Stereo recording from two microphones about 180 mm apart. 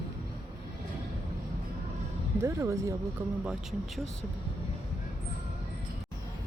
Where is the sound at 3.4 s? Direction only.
5° right (ahead or behind).